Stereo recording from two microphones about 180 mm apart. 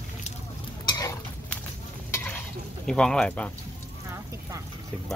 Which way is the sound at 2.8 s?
5° left (ahead or behind).